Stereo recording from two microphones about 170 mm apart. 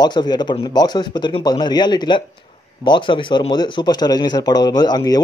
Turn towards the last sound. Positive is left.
turn(degrees=25)  # may be behind; listen again after turning